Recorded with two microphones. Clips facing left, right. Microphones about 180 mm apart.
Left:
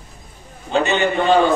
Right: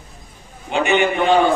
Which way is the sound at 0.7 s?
15° right (ahead or behind).